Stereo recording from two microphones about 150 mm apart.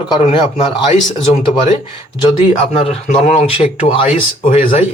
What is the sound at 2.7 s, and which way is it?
Speech, 45° left (ahead or behind).